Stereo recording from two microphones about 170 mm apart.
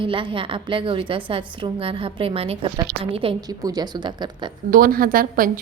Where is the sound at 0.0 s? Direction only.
30° right (ahead or behind).